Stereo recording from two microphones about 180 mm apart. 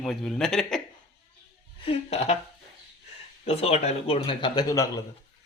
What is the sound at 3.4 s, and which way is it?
Speech, 35° left (ahead or behind).